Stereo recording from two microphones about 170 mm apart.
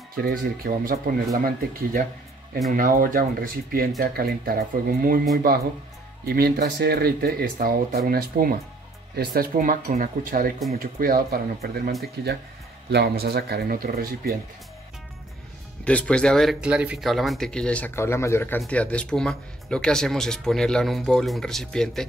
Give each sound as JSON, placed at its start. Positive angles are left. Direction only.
{"t": 0.2, "sound": "speech", "side_deg": -60}
{"t": 2.7, "sound": "speech", "side_deg": -55}
{"t": 6.2, "sound": "speech", "side_deg": -60}
{"t": 15.8, "sound": "speech", "side_deg": 10}